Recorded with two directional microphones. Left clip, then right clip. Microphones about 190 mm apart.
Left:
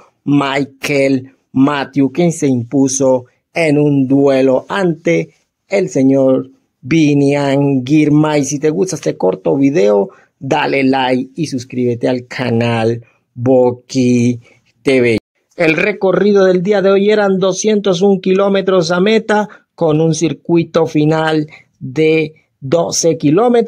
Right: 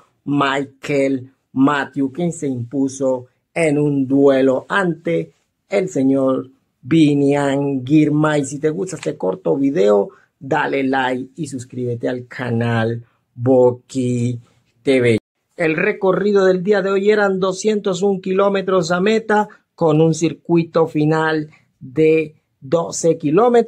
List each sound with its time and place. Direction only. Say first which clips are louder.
0.2 s speech: left 4 dB; 35° left (ahead or behind)